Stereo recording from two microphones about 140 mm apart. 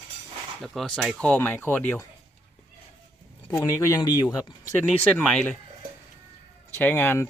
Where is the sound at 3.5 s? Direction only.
20° left (ahead or behind).